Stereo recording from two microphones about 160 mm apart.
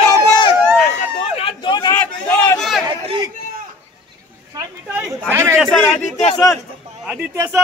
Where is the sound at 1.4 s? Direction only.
35° left (ahead or behind).